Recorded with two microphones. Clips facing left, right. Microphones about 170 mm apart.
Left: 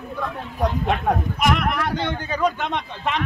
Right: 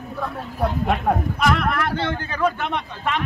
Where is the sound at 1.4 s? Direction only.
15° left (ahead or behind).